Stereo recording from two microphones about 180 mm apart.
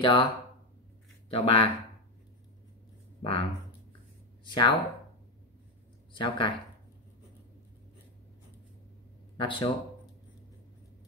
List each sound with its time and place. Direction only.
0.0 s speech: 25° left (ahead or behind)
1.3 s speech: 30° left (ahead or behind)
3.2 s speech: 30° left (ahead or behind)
4.5 s speech: 25° left (ahead or behind)
6.1 s speech: 25° left (ahead or behind)
9.4 s speech: 30° left (ahead or behind)